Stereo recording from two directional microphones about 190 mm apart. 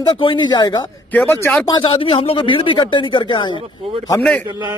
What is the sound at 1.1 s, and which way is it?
Speech, 5° left (ahead or behind).